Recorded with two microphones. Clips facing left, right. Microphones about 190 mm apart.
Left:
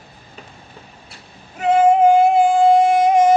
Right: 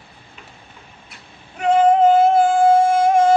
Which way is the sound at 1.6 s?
15° left (ahead or behind).